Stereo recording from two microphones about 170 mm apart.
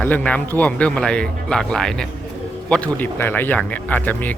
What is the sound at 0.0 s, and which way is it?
Speech, 10° left (ahead or behind).